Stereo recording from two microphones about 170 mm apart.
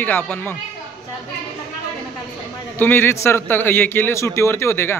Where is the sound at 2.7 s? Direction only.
10° left (ahead or behind).